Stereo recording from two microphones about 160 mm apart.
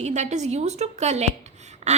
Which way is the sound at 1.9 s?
45° right (ahead or behind).